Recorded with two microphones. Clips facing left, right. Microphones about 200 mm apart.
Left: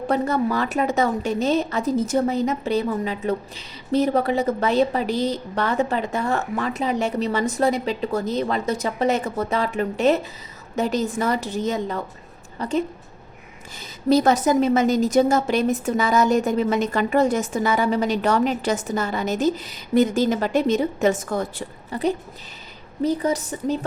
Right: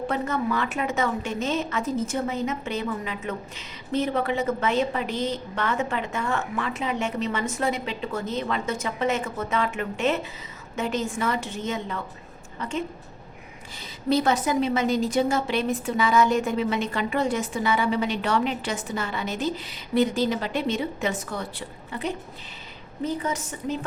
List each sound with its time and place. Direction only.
0.1 s a woman's voice: 35° left (ahead or behind)
14.1 s a woman's voice: 40° left (ahead or behind)